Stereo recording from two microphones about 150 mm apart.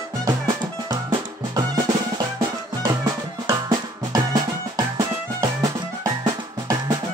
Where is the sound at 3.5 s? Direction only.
25° right (ahead or behind).